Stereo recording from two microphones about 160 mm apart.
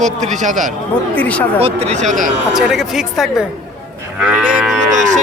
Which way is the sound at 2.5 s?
Centre (ahead or behind).